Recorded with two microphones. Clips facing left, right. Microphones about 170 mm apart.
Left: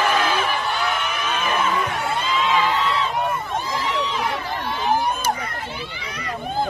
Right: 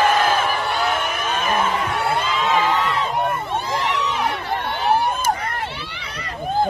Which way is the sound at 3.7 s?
65° right (ahead or behind).